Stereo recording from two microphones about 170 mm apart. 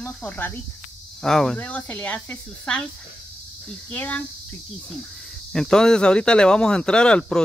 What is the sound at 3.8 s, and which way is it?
Speech, 10° left (ahead or behind).